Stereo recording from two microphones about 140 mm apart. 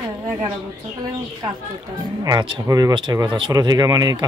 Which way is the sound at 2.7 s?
25° right (ahead or behind).